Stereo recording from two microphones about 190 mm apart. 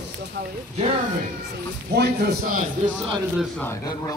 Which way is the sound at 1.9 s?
60° right (ahead or behind).